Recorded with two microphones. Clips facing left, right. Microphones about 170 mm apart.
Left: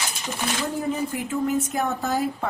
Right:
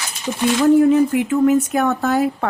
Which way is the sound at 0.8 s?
75° right (ahead or behind).